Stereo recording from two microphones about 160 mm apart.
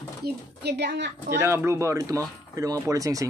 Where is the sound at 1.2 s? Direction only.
15° right (ahead or behind).